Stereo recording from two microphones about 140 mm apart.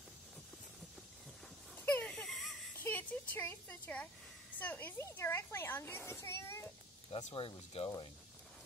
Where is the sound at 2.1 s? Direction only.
Centre (ahead or behind).